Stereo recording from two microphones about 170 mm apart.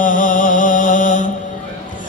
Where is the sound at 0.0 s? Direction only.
50° left (ahead or behind).